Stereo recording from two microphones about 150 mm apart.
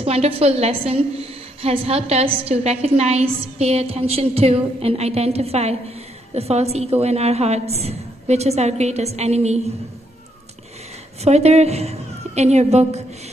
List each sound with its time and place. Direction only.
0.0 s a woman's voice: 45° right (ahead or behind)
11.2 s a woman's voice: 45° right (ahead or behind)